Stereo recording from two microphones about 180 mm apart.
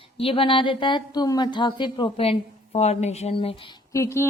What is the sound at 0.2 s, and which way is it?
A woman's voice, 30° left (ahead or behind).